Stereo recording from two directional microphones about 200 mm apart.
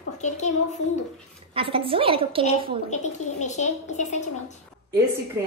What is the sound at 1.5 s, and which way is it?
A woman's voice, 25° right (ahead or behind).